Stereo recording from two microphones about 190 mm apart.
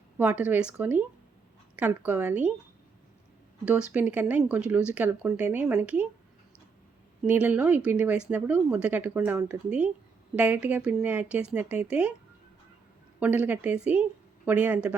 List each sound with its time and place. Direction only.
0.2 s speech: 5° right (ahead or behind)
3.7 s speech: 5° right (ahead or behind)
7.3 s speech: 10° right (ahead or behind)
13.1 s a woman's voice: 10° right (ahead or behind)